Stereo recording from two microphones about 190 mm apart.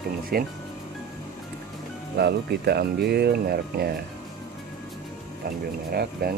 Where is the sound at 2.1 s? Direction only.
60° right (ahead or behind).